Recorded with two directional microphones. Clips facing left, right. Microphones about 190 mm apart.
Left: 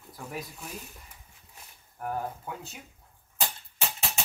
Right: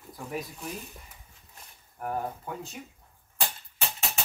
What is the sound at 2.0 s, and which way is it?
Speech, centre (ahead or behind).